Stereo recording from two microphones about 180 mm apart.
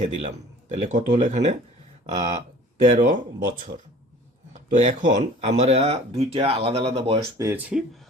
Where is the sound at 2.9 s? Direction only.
50° right (ahead or behind); by 7.8 s 10° right (ahead or behind).